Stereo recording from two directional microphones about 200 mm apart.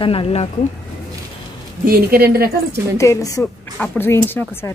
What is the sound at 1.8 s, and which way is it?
Speech, 50° right (ahead or behind).